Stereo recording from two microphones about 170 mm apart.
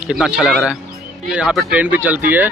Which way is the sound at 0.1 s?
5° right (ahead or behind).